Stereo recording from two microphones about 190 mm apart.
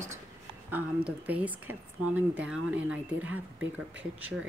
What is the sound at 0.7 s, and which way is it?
Speech, 10° right (ahead or behind).